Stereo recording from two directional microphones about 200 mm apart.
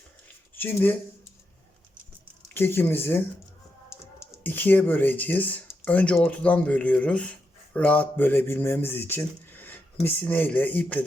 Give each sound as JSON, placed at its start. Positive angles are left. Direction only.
{"t": 0.5, "sound": "speech", "side_deg": 10}
{"t": 2.5, "sound": "speech", "side_deg": 10}